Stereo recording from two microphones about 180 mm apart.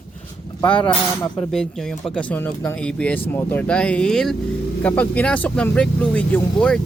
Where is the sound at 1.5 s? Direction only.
Centre (ahead or behind).